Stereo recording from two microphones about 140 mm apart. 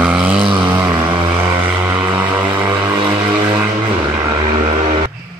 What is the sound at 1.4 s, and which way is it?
Vehicle, 15° right (ahead or behind).